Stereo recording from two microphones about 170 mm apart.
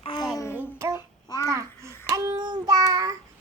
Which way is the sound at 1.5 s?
15° right (ahead or behind).